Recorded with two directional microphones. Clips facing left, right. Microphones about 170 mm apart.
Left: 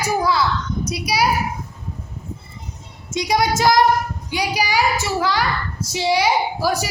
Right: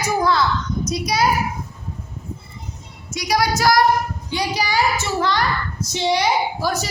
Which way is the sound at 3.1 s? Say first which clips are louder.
Left 1 dB; 25° left (ahead or behind).